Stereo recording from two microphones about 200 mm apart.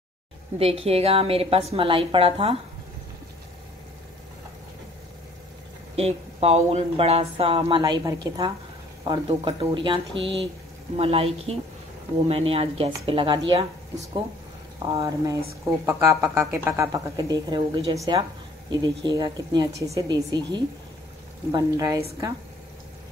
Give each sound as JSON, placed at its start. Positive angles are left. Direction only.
{"t": 0.6, "sound": "speech", "side_deg": -30}
{"t": 5.9, "sound": "speech", "side_deg": -30}